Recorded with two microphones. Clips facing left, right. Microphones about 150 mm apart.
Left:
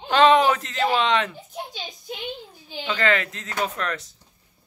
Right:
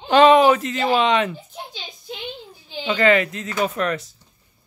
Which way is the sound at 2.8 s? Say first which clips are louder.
Right 6 dB; 10° right (ahead or behind).